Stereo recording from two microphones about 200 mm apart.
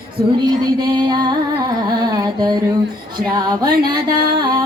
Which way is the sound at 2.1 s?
20° right (ahead or behind).